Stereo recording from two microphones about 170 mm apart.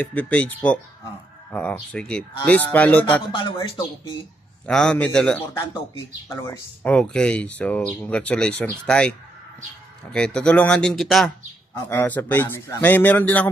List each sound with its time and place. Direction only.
0.0 s speech: 10° left (ahead or behind)
3.3 s speech: 30° left (ahead or behind)
4.6 s speech: 5° left (ahead or behind)
10.1 s speech: 5° left (ahead or behind)
11.9 s speech: 10° left (ahead or behind)